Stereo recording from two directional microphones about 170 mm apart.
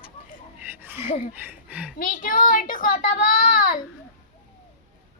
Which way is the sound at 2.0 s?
50° left (ahead or behind).